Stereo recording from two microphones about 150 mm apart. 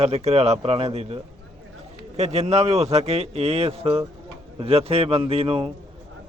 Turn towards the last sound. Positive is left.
turn(degrees=-40)  # may be behind; listen again after turning